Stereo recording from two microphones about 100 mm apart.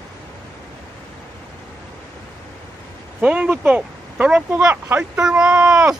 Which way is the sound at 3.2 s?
15° right (ahead or behind).